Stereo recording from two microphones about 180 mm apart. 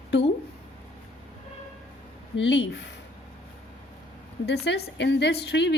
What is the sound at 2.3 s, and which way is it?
Speech, 90° left.